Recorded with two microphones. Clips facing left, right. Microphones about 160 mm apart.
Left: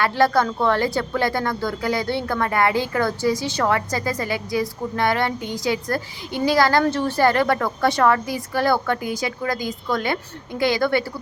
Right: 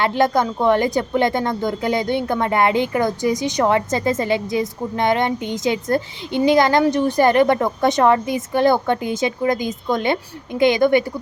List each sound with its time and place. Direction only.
0.0 s a woman's voice: 20° right (ahead or behind)